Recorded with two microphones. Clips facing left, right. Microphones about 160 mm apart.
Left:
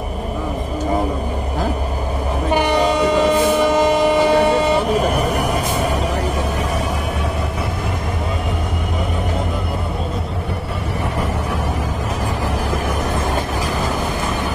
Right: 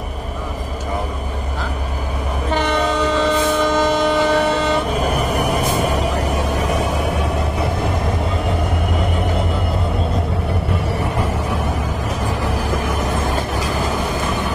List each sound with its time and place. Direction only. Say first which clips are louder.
2.5 s train: left 2 dB; 15° left (ahead or behind)